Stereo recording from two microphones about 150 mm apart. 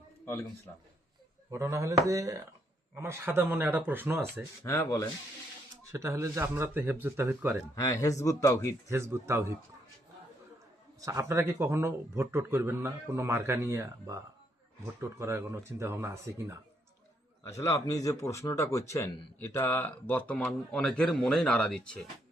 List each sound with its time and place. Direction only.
1.5 s a man's voice: 20° right (ahead or behind)
4.6 s speech: 20° left (ahead or behind)
5.9 s a man's voice: 20° right (ahead or behind)
7.8 s speech: 20° left (ahead or behind)
8.9 s a man's voice: 20° right (ahead or behind)
11.0 s a man's voice: 20° right (ahead or behind)
15.2 s speech: 20° right (ahead or behind)
17.4 s speech: 20° left (ahead or behind)